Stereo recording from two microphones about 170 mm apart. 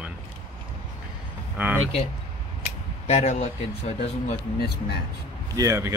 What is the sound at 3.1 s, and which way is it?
Speech, 40° left (ahead or behind).